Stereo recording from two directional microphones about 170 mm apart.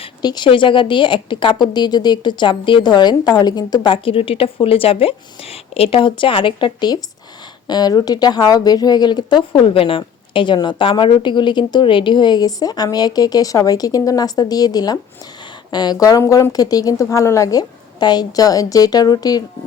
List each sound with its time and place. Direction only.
0.0 s a woman's voice: 25° left (ahead or behind)